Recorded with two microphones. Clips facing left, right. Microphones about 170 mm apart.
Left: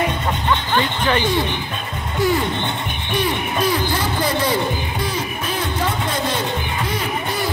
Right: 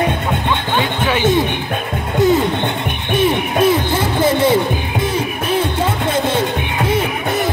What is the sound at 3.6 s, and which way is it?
Music, 25° right (ahead or behind).